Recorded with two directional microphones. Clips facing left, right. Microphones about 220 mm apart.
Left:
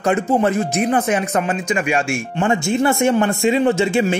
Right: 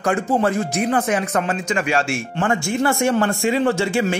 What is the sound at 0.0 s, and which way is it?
A man's voice, 20° left (ahead or behind).